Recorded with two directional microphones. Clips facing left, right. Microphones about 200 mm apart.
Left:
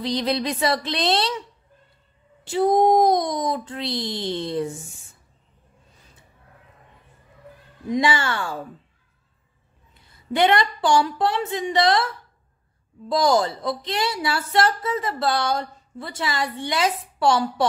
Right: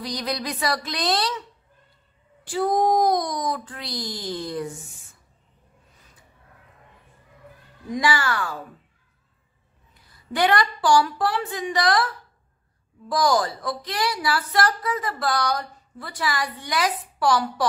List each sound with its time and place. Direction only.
0.0 s a woman's voice: 25° left (ahead or behind)
2.4 s a woman's voice: 25° left (ahead or behind)
7.9 s a woman's voice: 25° left (ahead or behind)
10.1 s a woman's voice: 25° left (ahead or behind)
13.1 s a woman's voice: 25° left (ahead or behind)